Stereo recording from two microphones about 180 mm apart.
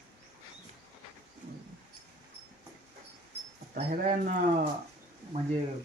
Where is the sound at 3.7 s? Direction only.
45° right (ahead or behind).